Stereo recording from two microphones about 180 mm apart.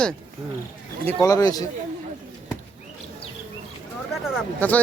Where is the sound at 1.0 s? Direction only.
20° left (ahead or behind).